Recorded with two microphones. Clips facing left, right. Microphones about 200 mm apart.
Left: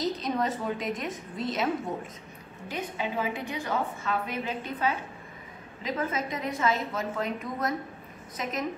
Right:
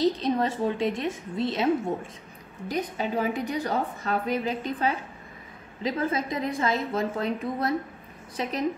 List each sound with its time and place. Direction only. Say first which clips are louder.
0.0 s a woman's voice: right 5 dB; 30° right (ahead or behind)
2.7 s a woman's voice: right 4 dB; 40° right (ahead or behind)